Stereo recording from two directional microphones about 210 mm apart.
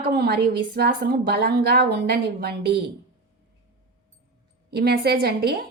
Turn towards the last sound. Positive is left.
turn(degrees=-50)  # may be behind; listen again after turning